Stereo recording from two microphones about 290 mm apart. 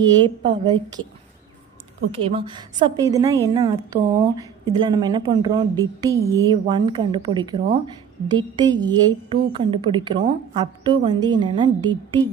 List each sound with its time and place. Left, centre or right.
0.0 s a woman's voice: centre
2.2 s a woman's voice: centre